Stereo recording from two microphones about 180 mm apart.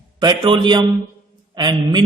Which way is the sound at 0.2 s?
25° right (ahead or behind).